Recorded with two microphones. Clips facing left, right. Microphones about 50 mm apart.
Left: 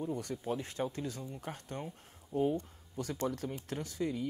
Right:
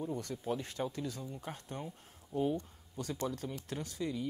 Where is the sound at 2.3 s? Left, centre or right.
Left.